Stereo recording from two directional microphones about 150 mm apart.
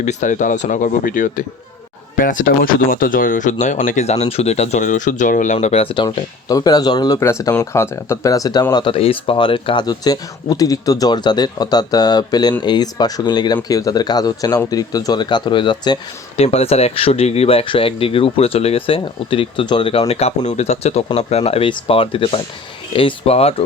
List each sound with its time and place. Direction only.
0.0 s speech: 55° left (ahead or behind); by 8.6 s 25° left (ahead or behind)
8.7 s speech: 35° left (ahead or behind)
16.4 s speech: 45° left (ahead or behind)